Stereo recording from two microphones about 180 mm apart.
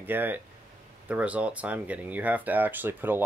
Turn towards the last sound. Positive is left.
turn(degrees=-10)  # may be behind; listen again after turning